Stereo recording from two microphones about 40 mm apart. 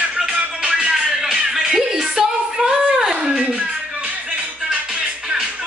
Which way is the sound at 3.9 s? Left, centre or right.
Right.